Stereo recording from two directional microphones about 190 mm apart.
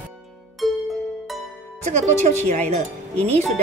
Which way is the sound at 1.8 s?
40° right (ahead or behind).